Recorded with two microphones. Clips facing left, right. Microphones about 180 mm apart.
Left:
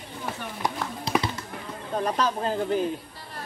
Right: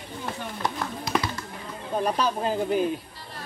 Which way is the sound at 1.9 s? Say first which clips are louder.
Right 1 dB; 10° right (ahead or behind).